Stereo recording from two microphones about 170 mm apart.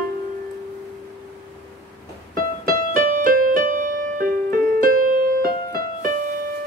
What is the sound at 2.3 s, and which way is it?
Music, 55° right (ahead or behind).